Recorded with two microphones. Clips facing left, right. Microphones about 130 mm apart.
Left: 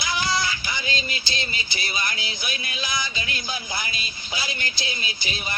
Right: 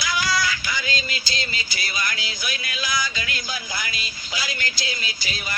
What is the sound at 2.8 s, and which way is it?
Music, 25° left (ahead or behind).